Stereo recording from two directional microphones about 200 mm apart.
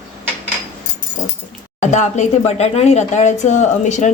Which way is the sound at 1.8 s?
35° left (ahead or behind).